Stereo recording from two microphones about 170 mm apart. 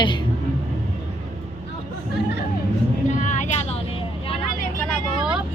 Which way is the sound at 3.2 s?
45° left (ahead or behind).